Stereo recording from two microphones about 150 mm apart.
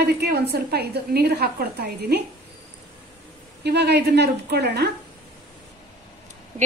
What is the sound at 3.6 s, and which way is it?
A woman's voice, 90° right.